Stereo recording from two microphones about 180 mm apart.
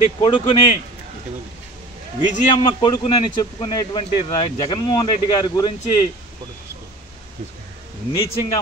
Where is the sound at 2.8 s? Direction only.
25° left (ahead or behind).